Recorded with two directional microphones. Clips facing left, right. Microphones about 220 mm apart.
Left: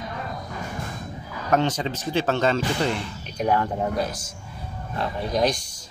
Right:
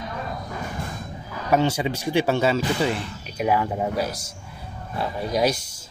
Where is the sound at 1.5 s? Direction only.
10° right (ahead or behind).